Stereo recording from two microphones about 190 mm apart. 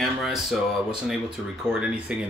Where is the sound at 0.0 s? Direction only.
Centre (ahead or behind).